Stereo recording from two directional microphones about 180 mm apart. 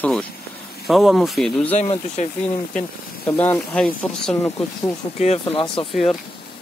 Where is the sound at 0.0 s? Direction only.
5° left (ahead or behind).